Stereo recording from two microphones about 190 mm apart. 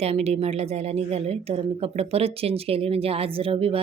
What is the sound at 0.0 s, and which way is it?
A woman's voice, 35° right (ahead or behind).